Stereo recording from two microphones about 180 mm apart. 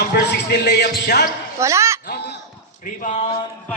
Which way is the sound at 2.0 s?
70° left (ahead or behind).